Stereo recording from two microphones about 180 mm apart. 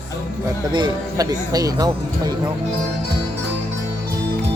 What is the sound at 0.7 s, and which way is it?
Speech, 20° right (ahead or behind).